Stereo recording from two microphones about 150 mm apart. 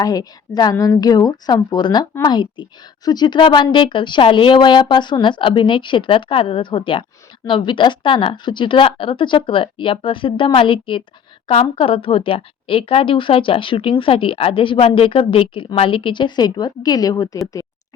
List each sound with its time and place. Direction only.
0.0 s a woman's voice: 25° left (ahead or behind)